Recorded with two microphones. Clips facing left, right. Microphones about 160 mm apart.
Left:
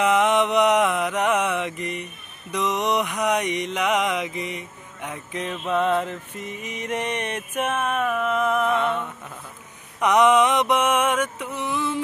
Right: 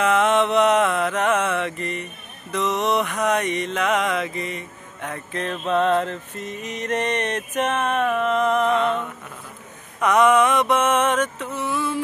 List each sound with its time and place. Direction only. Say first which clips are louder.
0.0 s mantra: right 1 dB; 15° left (ahead or behind)
9.9 s mantra: right 1 dB; 15° left (ahead or behind)